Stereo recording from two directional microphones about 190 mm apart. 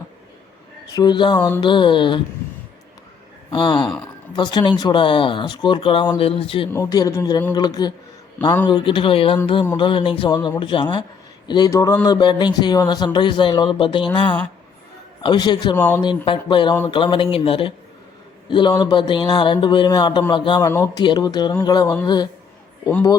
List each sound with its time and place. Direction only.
0.9 s speech: 20° left (ahead or behind)
3.5 s speech: 25° left (ahead or behind)
6.7 s speech: 15° left (ahead or behind)
15.7 s speech: 10° left (ahead or behind)
16.0 s speech: 25° left (ahead or behind)